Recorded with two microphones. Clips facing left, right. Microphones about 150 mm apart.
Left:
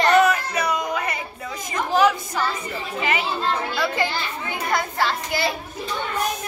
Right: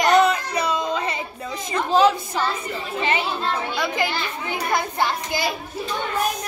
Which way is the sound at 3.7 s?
15° right (ahead or behind).